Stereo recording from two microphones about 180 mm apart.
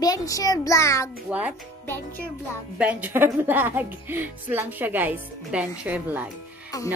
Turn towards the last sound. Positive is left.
turn(degrees=-10)  # may be behind; listen again after turning